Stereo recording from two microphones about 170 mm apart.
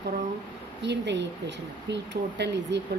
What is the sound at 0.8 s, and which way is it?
Speech, 90° right.